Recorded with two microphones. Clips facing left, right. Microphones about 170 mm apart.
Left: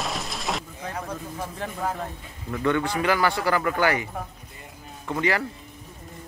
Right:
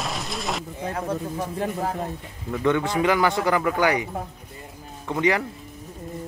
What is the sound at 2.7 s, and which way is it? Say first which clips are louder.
A man's voice: right 2 dB; 20° right (ahead or behind).